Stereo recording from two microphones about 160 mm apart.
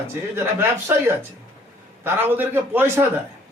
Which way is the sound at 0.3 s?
15° right (ahead or behind).